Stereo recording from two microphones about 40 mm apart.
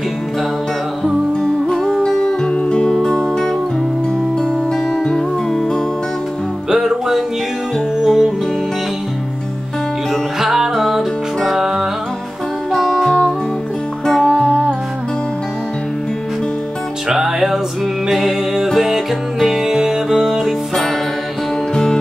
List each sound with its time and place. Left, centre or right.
1.4 s music: centre
2.0 s music: centre
2.5 s music: left
2.9 s music: centre
5.0 s music: centre
6.7 s music: centre
10.4 s music: centre
10.7 s music: centre
11.0 s music: centre
12.7 s music: centre
17.1 s music: centre
19.4 s music: centre
20.3 s music: centre